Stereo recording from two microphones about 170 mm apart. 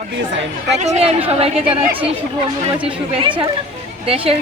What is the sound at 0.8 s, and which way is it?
Speech, 40° right (ahead or behind).